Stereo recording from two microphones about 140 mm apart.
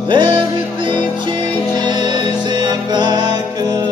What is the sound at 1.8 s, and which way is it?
Music, 30° right (ahead or behind).